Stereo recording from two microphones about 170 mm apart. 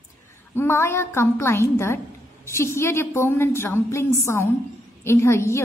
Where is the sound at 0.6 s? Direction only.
15° left (ahead or behind).